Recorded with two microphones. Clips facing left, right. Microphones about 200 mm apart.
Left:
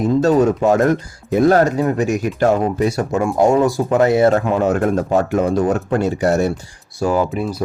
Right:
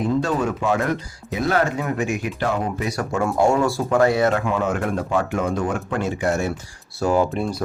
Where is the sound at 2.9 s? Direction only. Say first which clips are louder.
Left 4 dB; 20° left (ahead or behind).